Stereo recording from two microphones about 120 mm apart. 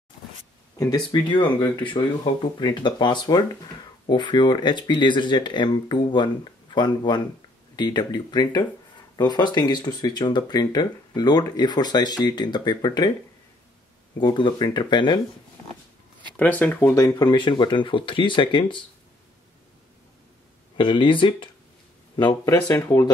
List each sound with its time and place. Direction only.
0.7 s speech: 35° left (ahead or behind)
14.2 s speech: 40° left (ahead or behind)
16.3 s speech: 15° left (ahead or behind)
16.9 s speech: 25° left (ahead or behind)
17.3 s speech: 40° left (ahead or behind)
20.7 s speech: 40° left (ahead or behind); by 23.0 s 25° left (ahead or behind)